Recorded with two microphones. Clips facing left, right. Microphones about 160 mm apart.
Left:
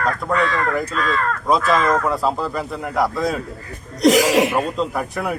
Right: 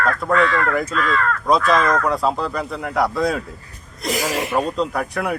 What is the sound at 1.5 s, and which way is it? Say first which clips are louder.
A man's voice: even; centre (ahead or behind).